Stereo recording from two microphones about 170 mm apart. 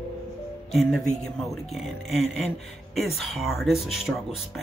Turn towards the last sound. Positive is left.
turn(degrees=0)  # may be behind; listen again after turning